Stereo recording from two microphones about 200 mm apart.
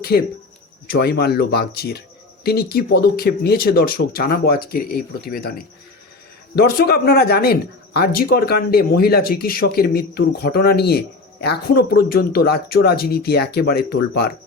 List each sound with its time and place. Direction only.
0.9 s speech: 55° left (ahead or behind)